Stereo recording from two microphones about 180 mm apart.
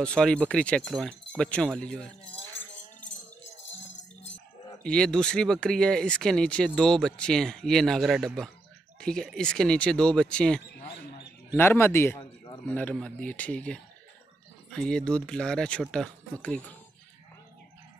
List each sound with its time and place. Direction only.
0.0 s speech: 5° left (ahead or behind)
4.8 s speech: 5° left (ahead or behind)